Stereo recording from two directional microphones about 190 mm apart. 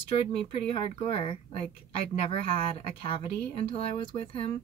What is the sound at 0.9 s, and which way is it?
A woman's voice, 30° left (ahead or behind).